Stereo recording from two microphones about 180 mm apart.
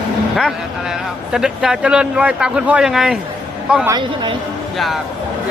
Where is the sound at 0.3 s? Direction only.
Centre (ahead or behind).